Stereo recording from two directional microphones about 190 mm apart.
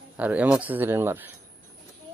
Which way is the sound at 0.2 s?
10° right (ahead or behind).